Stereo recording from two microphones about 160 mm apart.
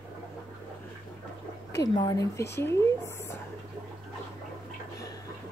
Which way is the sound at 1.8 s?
25° left (ahead or behind).